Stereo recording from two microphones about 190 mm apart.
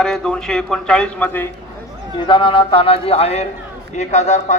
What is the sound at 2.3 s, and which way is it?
Speech, 25° left (ahead or behind).